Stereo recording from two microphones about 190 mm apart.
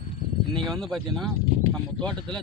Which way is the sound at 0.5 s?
Centre (ahead or behind).